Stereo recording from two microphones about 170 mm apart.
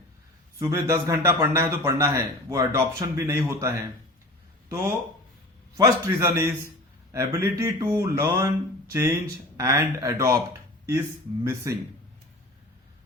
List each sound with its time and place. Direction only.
0.6 s speech: 20° right (ahead or behind)
11.6 s speech: 15° right (ahead or behind)